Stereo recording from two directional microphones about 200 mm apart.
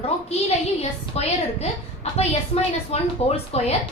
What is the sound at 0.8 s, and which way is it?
A woman's voice, 30° left (ahead or behind).